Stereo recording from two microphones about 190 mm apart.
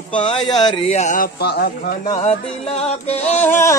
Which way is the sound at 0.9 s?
40° left (ahead or behind).